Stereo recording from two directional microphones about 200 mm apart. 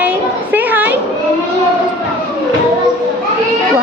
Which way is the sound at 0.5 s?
10° right (ahead or behind).